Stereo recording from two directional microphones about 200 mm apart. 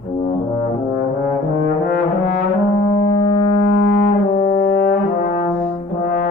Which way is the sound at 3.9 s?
60° left (ahead or behind).